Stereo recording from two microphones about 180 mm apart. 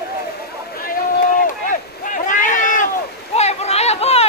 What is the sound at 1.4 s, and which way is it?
Boat, 45° left (ahead or behind).